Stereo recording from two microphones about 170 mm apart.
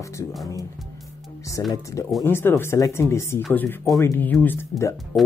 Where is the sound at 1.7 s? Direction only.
20° left (ahead or behind).